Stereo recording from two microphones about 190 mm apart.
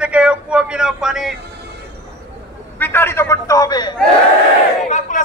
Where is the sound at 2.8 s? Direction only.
10° left (ahead or behind).